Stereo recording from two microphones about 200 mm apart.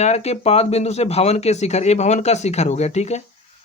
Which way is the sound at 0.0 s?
30° left (ahead or behind).